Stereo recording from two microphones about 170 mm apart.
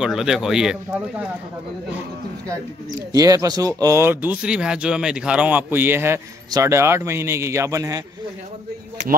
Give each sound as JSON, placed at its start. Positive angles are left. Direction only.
{"t": 0.0, "sound": "speech", "side_deg": -5}
{"t": 3.1, "sound": "speech", "side_deg": -20}